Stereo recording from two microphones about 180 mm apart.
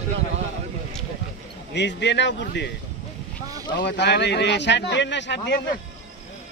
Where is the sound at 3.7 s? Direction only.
70° left (ahead or behind).